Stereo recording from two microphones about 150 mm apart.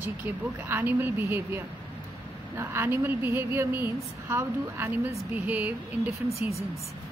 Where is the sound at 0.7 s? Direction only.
15° right (ahead or behind).